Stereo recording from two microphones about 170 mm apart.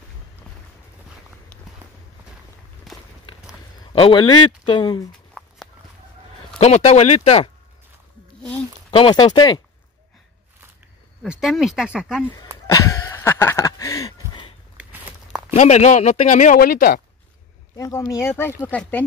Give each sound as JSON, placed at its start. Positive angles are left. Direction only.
{"t": 2.9, "sound": "walk", "side_deg": 0}
{"t": 3.9, "sound": "speech", "side_deg": 30}
{"t": 5.4, "sound": "walk", "side_deg": 5}
{"t": 6.6, "sound": "speech", "side_deg": 40}
{"t": 8.9, "sound": "speech", "side_deg": 30}
{"t": 11.2, "sound": "speech", "side_deg": 0}
{"t": 12.4, "sound": "a sound", "side_deg": 20}
{"t": 14.8, "sound": "walk", "side_deg": -10}
{"t": 15.5, "sound": "speech", "side_deg": 45}
{"t": 17.7, "sound": "speech", "side_deg": 20}